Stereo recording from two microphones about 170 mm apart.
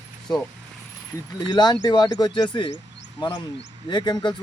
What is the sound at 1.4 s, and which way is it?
Speech, 25° left (ahead or behind).